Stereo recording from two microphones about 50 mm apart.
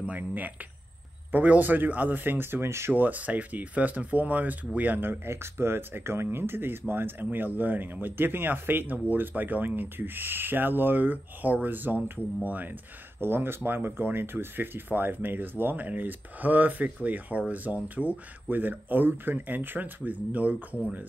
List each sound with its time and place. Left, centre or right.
0.0 s speech: right
2.9 s speech: right
13.2 s speech: right